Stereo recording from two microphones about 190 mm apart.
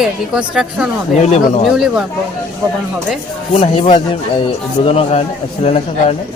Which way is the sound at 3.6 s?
30° left (ahead or behind).